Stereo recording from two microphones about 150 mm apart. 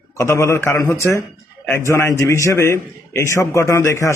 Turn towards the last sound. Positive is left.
turn(degrees=20)  # may be behind; listen again after turning